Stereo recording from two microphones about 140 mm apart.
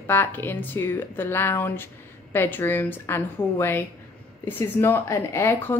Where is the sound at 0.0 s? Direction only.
15° left (ahead or behind).